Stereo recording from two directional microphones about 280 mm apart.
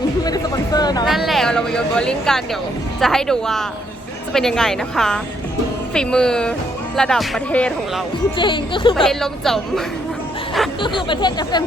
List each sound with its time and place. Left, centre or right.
0.3 s a sound: centre
1.0 s speech: centre
8.4 s speech: centre
9.0 s speech: centre
10.8 s speech: centre